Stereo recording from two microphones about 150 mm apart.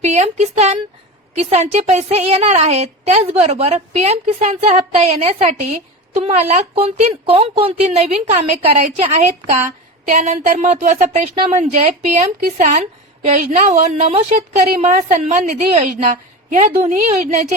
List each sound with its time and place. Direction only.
0.0 s a woman's voice: 50° right (ahead or behind)
10.1 s a woman's voice: 60° right (ahead or behind)
11.3 s a woman's voice: 40° right (ahead or behind)
11.6 s a woman's voice: 50° right (ahead or behind)
12.4 s speech: 75° right (ahead or behind)
12.6 s a woman's voice: 50° right (ahead or behind)